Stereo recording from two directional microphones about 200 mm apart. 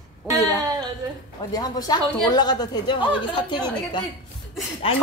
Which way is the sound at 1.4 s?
20° left (ahead or behind).